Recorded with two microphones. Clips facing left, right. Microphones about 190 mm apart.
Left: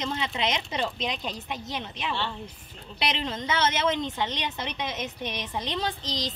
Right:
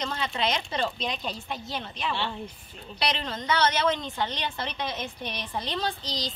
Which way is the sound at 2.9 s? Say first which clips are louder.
Left 1 dB; 20° left (ahead or behind).